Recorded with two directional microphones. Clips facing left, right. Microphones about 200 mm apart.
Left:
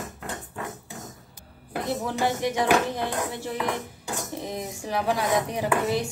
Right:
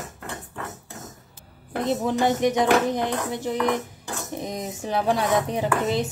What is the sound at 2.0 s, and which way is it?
Speech, 20° right (ahead or behind).